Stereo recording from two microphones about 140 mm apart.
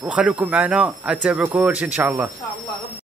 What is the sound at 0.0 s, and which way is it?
Speech, 5° right (ahead or behind).